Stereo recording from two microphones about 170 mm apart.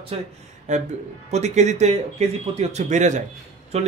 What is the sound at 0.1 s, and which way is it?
Speech, 35° right (ahead or behind).